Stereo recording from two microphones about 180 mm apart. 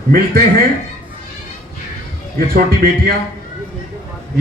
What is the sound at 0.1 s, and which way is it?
Speech, 60° right (ahead or behind).